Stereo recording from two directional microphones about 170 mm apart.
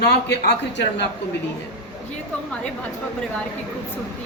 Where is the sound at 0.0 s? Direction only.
80° left.